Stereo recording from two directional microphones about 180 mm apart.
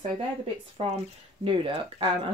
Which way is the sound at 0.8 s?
30° right (ahead or behind).